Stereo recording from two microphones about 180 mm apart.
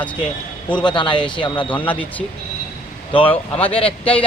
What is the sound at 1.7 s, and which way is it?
Speech, 10° left (ahead or behind).